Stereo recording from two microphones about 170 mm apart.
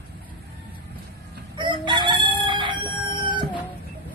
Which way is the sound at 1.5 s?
30° right (ahead or behind).